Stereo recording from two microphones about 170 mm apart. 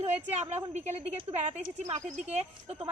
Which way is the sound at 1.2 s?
40° right (ahead or behind).